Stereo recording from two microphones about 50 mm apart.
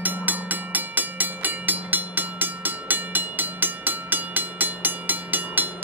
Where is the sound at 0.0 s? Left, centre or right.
Right.